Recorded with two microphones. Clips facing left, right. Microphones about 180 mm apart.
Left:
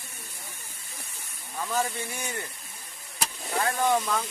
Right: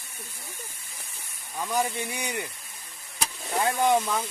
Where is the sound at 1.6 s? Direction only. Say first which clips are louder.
Right 2 dB; 15° right (ahead or behind).